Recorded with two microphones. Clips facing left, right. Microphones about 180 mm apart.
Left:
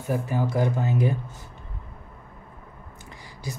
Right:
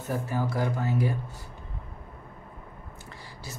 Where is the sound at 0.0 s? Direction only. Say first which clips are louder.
Left 3 dB; 15° left (ahead or behind).